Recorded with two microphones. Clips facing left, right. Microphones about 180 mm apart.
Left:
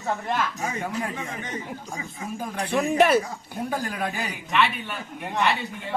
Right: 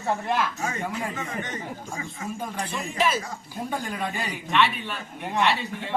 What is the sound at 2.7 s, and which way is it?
Speech, 65° left (ahead or behind).